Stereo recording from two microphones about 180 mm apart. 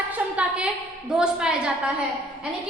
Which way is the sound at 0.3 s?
5° right (ahead or behind).